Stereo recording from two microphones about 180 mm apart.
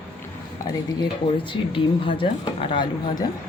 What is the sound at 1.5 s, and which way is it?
Speech, 30° left (ahead or behind).